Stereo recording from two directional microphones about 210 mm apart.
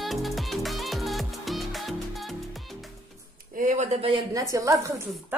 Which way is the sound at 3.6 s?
35° right (ahead or behind).